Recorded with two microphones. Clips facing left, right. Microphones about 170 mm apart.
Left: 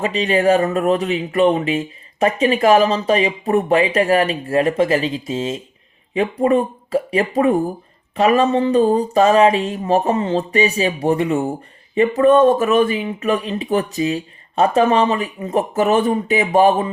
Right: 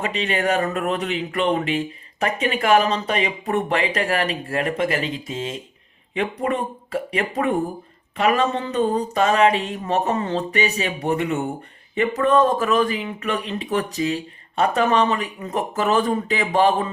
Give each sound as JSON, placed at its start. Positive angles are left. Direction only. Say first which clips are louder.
{"t": 0.0, "sound": "speech", "louder": "left 6 dB", "side_deg": 30}